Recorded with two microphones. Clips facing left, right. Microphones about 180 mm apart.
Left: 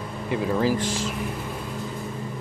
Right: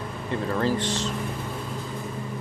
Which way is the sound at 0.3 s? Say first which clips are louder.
Left 2 dB; 10° left (ahead or behind).